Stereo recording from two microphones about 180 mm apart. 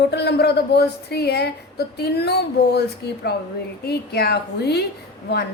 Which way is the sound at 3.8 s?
60° left (ahead or behind).